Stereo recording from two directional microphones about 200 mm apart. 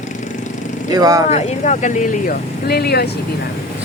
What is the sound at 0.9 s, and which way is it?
Speech, 15° right (ahead or behind).